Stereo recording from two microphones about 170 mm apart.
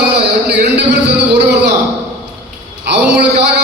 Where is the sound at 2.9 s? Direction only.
80° right.